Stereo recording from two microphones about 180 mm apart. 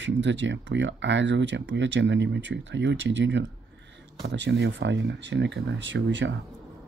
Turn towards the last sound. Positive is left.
turn(degrees=-90)